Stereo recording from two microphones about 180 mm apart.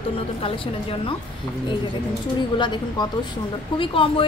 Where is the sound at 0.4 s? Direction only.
30° left (ahead or behind).